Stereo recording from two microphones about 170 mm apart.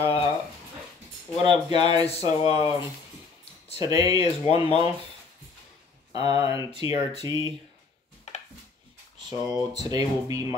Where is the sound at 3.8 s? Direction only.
20° right (ahead or behind).